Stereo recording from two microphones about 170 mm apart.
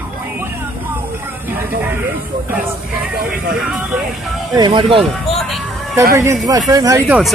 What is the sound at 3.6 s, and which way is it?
Speech, 5° right (ahead or behind).